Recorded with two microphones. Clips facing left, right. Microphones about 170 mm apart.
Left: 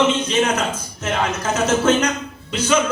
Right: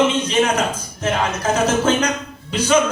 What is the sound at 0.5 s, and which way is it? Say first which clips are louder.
Speech: right 2 dB; 35° right (ahead or behind).